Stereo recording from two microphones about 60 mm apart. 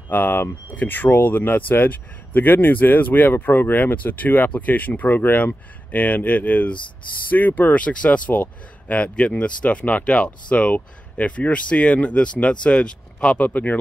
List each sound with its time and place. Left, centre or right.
0.1 s speech: left; by 13.5 s centre
13.5 s speech: left